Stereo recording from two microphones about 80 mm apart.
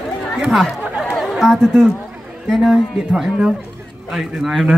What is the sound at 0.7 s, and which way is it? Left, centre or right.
Chatter, centre.